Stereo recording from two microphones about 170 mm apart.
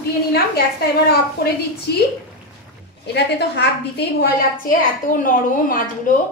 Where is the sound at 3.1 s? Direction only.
80° left; by 6.2 s 55° left (ahead or behind).